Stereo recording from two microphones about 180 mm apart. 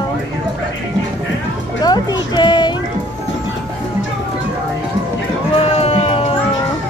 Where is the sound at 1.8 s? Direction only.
25° left (ahead or behind).